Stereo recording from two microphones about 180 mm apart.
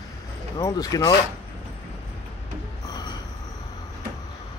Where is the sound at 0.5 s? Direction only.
20° left (ahead or behind).